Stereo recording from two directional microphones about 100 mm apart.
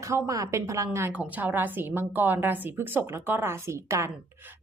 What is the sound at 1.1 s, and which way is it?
Speech, 15° right (ahead or behind).